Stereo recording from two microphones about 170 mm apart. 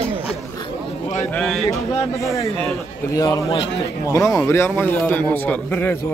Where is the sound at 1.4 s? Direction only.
5° left (ahead or behind).